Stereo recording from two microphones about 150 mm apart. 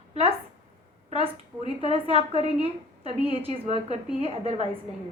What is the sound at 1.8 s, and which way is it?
A woman's voice, 40° right (ahead or behind).